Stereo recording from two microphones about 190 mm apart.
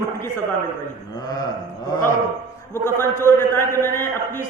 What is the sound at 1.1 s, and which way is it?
Speech, 20° left (ahead or behind).